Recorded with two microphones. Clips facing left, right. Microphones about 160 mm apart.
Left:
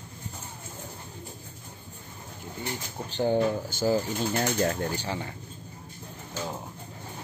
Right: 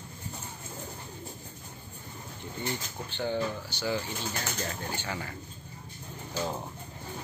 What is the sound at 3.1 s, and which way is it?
Speech, 40° left (ahead or behind).